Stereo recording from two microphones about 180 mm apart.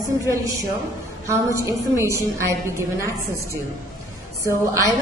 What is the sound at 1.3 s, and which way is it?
A woman's voice, 15° right (ahead or behind).